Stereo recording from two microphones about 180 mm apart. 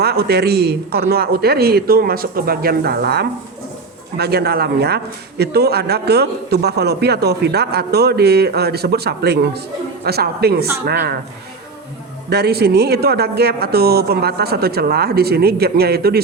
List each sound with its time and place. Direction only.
0.0 s a man's voice: 60° right (ahead or behind)
12.3 s a man's voice: 65° right (ahead or behind)